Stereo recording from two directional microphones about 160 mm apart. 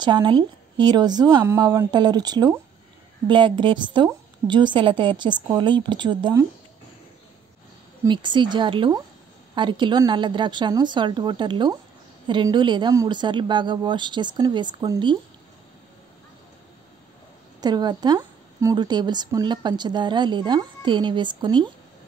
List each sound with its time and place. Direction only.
0.0 s a woman's voice: 30° right (ahead or behind)
8.1 s a woman's voice: 30° right (ahead or behind)
17.6 s a woman's voice: 25° right (ahead or behind)